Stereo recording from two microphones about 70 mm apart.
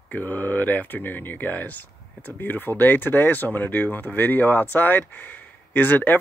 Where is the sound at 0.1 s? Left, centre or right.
Left.